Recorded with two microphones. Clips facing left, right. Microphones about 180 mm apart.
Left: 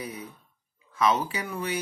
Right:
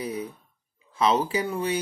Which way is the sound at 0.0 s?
30° right (ahead or behind).